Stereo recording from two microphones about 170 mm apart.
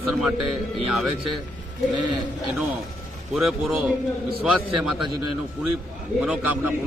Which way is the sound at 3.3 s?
5° right (ahead or behind).